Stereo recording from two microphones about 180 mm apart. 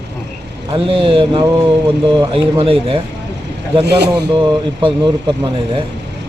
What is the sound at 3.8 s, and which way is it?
Speech, 65° right (ahead or behind).